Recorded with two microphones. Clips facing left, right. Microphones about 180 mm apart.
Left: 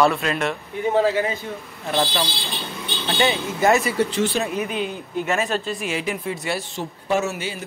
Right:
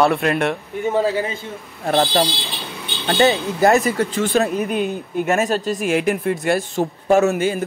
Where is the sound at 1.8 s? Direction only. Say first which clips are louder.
Right 6 dB; 50° right (ahead or behind).